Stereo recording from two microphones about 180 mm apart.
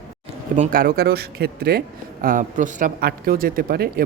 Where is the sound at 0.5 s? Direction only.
45° right (ahead or behind).